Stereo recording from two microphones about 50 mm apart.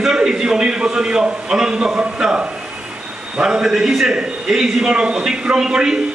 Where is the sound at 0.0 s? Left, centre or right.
Centre.